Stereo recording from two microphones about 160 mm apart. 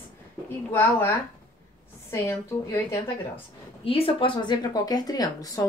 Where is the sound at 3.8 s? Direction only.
35° left (ahead or behind).